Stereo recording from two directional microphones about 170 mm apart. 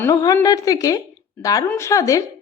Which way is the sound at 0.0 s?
20° left (ahead or behind).